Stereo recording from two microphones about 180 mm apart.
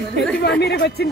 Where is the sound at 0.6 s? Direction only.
65° left (ahead or behind).